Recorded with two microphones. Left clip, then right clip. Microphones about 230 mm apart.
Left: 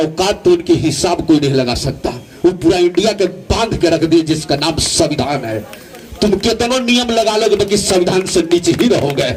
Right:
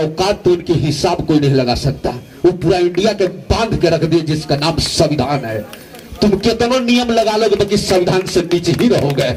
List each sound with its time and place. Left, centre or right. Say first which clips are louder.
0.0 s a man's voice: left 1 dB; left